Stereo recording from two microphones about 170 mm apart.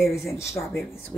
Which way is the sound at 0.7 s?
Centre (ahead or behind).